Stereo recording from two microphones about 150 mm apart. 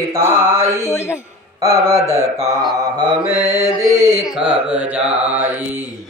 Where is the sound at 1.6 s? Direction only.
20° right (ahead or behind).